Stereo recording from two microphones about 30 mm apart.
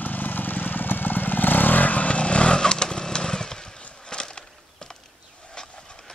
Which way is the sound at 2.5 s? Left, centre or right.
Left.